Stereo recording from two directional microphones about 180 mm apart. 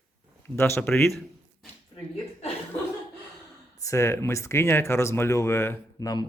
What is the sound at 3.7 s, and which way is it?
Speech, 15° left (ahead or behind).